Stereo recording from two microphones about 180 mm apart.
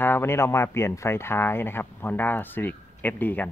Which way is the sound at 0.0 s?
15° left (ahead or behind).